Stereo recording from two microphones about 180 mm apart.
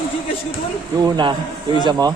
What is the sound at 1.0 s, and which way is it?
Speech, 25° right (ahead or behind).